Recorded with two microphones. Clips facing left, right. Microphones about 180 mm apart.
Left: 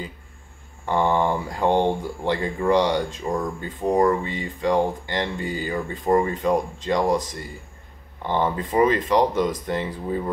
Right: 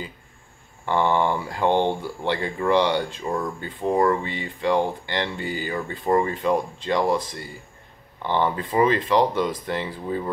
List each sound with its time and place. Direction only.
0.8 s speech: 15° left (ahead or behind)
4.2 s speech: 20° right (ahead or behind)
4.6 s speech: 20° left (ahead or behind)